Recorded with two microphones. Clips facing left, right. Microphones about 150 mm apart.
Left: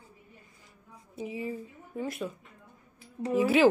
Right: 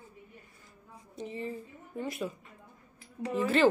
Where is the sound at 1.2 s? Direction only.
5° left (ahead or behind).